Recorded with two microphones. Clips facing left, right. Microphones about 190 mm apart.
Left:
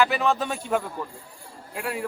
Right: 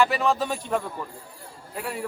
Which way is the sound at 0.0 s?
Centre (ahead or behind).